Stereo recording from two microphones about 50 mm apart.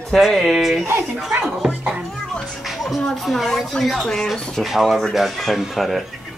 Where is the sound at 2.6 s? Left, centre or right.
Centre.